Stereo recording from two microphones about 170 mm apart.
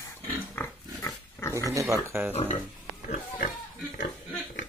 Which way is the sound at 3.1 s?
50° left (ahead or behind).